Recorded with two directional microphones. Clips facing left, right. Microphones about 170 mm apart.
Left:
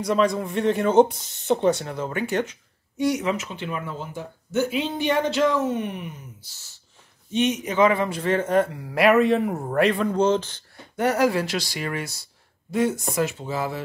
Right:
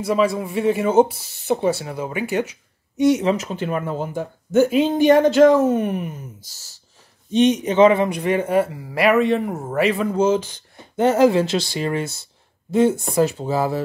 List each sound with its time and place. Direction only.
0.0 s speech: 5° right (ahead or behind)
3.0 s speech: 25° right (ahead or behind); by 6.1 s 45° right (ahead or behind)
7.2 s speech: 35° right (ahead or behind); by 10.6 s 10° right (ahead or behind)
11.0 s speech: 25° right (ahead or behind)